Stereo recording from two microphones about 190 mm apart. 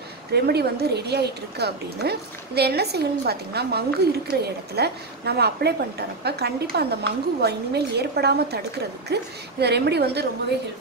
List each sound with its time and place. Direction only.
0.3 s a woman's voice: 60° right (ahead or behind)